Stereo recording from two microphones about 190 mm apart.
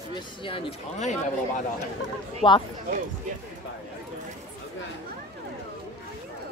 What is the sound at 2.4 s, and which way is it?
Speech, 25° left (ahead or behind).